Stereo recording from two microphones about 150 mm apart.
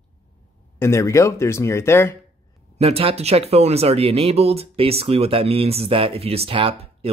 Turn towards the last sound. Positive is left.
turn(degrees=-40)  # may be behind; listen again after turning